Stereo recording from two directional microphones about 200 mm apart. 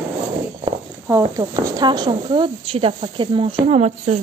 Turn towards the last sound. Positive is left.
turn(degrees=-35)  # may be behind; listen again after turning